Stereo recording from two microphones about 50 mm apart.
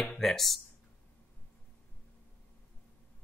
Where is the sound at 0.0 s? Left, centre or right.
Centre.